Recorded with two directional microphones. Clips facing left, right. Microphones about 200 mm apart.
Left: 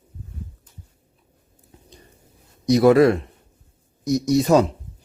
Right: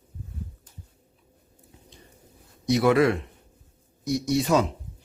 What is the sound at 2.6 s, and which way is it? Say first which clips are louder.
Speech: left 6 dB; 40° left (ahead or behind).